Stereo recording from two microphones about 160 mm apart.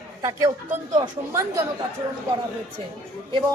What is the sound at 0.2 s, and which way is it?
Speech, 20° right (ahead or behind).